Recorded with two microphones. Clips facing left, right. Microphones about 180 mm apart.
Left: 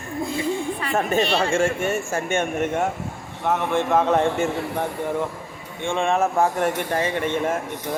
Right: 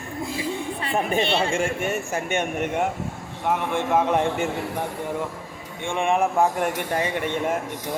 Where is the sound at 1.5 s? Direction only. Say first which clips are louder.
Left 3 dB; 10° right (ahead or behind).